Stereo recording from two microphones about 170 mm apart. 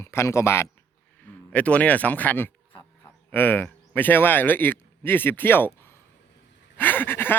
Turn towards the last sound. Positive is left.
turn(degrees=10)  # may be behind; listen again after turning